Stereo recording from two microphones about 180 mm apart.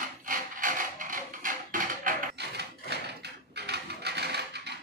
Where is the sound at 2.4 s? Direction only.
70° right (ahead or behind).